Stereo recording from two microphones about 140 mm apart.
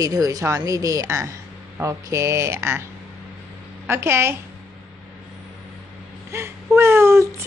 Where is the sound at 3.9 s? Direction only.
15° right (ahead or behind).